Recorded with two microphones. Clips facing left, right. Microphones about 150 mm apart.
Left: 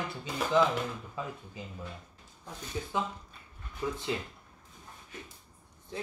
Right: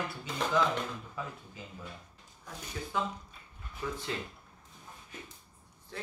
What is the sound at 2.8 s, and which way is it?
Speech, 15° left (ahead or behind).